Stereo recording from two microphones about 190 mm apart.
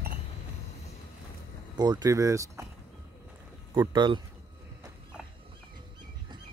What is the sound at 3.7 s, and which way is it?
Speech, 25° right (ahead or behind).